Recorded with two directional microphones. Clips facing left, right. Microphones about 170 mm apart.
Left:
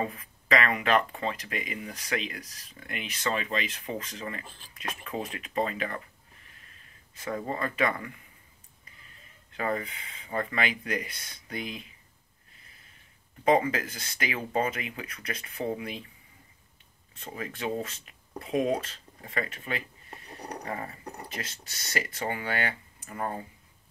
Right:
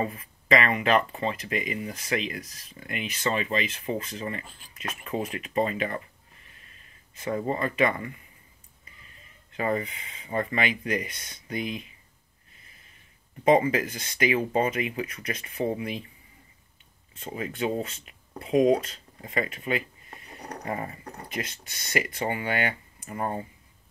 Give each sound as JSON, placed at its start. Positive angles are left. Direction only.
{"t": 0.6, "sound": "speech", "side_deg": -5}
{"t": 7.2, "sound": "speech", "side_deg": -20}
{"t": 7.7, "sound": "speech", "side_deg": -10}
{"t": 9.6, "sound": "speech", "side_deg": -10}
{"t": 13.4, "sound": "speech", "side_deg": -10}
{"t": 17.2, "sound": "speech", "side_deg": -10}